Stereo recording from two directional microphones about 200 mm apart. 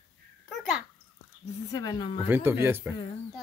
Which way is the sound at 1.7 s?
20° left (ahead or behind).